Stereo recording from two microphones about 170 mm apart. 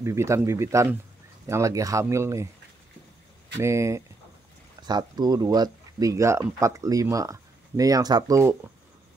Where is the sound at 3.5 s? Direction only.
15° right (ahead or behind).